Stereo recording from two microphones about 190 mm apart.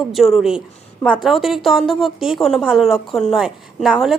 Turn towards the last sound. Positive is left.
turn(degrees=0)  # may be behind; listen again after turning